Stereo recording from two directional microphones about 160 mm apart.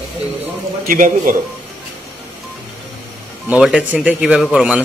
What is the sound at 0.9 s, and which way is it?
Speech, 60° right (ahead or behind).